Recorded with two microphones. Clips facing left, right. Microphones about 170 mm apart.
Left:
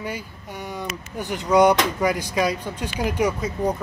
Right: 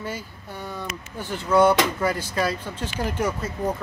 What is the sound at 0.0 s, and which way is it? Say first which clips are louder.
Speech: left 2 dB; 15° left (ahead or behind).